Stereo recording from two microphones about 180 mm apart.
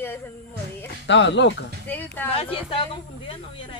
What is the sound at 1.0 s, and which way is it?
Speech, 85° left.